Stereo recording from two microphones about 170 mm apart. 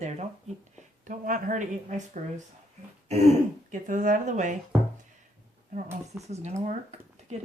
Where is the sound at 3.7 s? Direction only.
50° right (ahead or behind).